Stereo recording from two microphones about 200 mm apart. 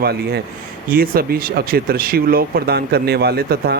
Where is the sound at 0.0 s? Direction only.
55° right (ahead or behind).